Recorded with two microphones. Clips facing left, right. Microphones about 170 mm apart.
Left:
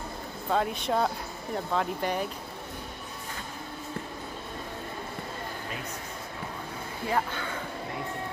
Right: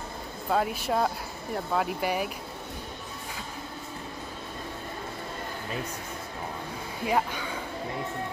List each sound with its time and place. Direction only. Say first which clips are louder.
0.5 s speech: right 1 dB; 5° right (ahead or behind)
7.1 s speech: right 2 dB; 15° right (ahead or behind)